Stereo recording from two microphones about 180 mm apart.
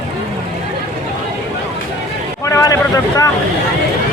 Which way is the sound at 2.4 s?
15° left (ahead or behind).